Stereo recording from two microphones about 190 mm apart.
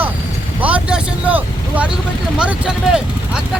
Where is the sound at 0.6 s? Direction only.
5° right (ahead or behind).